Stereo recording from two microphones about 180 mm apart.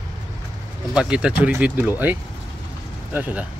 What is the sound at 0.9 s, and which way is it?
Speech, 5° right (ahead or behind).